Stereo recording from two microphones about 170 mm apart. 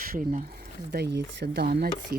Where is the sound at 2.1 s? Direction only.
60° right (ahead or behind).